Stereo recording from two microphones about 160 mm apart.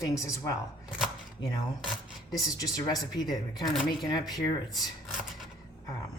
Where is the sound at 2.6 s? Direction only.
25° left (ahead or behind).